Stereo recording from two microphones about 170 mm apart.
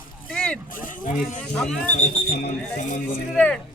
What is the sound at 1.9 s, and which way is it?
Speech, 50° left (ahead or behind).